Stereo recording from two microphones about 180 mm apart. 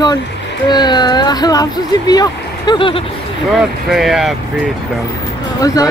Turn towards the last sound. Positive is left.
turn(degrees=20)  # may be behind; listen again after turning